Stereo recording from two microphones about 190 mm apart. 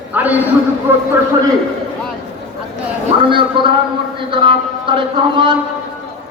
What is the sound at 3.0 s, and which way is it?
A man's voice, 25° right (ahead or behind).